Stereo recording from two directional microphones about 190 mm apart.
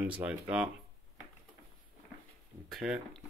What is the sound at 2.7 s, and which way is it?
Speech, 5° right (ahead or behind).